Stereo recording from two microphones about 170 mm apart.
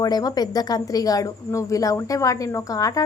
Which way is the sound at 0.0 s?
20° left (ahead or behind).